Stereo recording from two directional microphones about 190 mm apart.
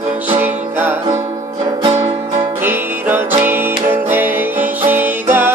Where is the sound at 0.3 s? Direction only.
10° right (ahead or behind).